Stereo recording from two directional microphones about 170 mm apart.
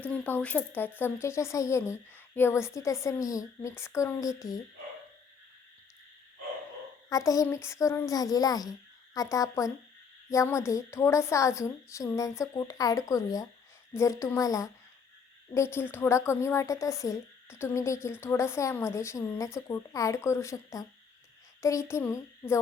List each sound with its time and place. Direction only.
0.1 s speech: 10° left (ahead or behind)
7.1 s a child's voice: 20° left (ahead or behind)